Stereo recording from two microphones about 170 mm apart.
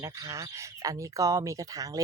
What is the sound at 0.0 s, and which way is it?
Speech, 20° right (ahead or behind).